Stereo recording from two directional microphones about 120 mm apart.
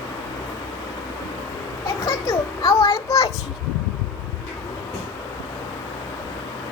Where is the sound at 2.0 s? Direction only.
30° left (ahead or behind).